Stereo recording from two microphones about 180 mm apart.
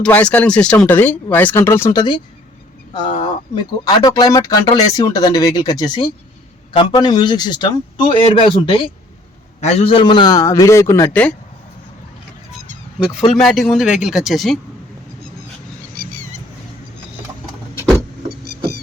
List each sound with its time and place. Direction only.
0.0 s speech: 5° left (ahead or behind)
13.3 s speech: centre (ahead or behind)
18.3 s rodents: 60° right (ahead or behind)